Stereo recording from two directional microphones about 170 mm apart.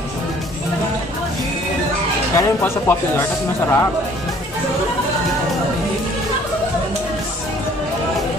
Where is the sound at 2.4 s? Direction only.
15° left (ahead or behind).